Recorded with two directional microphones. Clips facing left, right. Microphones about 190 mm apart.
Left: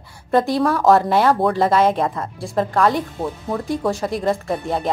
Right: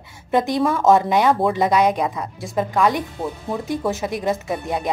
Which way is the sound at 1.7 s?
15° right (ahead or behind).